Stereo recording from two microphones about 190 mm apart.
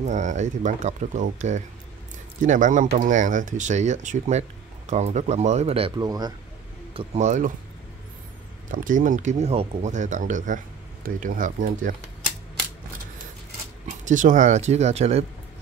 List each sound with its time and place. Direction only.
0.0 s speech: 40° right (ahead or behind); by 6.3 s 20° right (ahead or behind)
6.9 s speech: 35° right (ahead or behind)
8.7 s speech: 45° right (ahead or behind)
13.8 s speech: 40° right (ahead or behind)